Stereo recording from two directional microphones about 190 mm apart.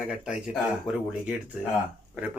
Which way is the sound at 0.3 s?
5° right (ahead or behind).